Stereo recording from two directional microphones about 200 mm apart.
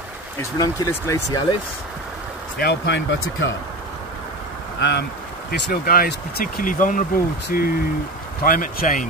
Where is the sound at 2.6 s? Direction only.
55° left (ahead or behind).